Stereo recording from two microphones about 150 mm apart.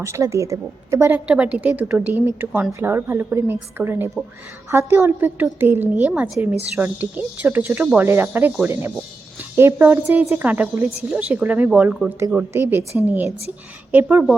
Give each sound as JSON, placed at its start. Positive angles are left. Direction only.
{"t": 0.0, "sound": "a woman's voice", "side_deg": -20}